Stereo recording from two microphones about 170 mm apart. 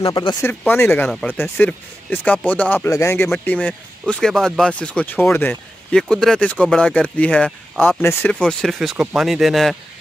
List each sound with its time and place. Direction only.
0.0 s speech: 25° left (ahead or behind)
0.5 s speech: 10° left (ahead or behind)